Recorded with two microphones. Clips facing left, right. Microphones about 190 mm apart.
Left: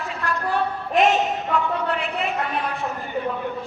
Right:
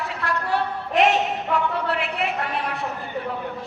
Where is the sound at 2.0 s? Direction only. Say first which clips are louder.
Even; 65° right (ahead or behind).